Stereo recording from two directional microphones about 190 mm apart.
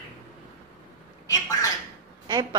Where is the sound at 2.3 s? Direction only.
20° right (ahead or behind).